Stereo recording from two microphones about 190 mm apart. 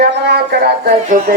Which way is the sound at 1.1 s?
45° right (ahead or behind).